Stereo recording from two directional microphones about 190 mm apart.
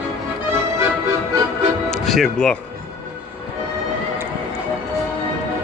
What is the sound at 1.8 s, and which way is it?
Music, centre (ahead or behind).